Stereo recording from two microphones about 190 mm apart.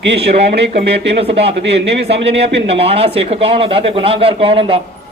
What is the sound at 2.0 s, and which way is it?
Speech, 65° right (ahead or behind).